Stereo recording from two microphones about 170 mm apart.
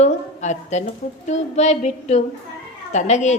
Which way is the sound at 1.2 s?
40° left (ahead or behind).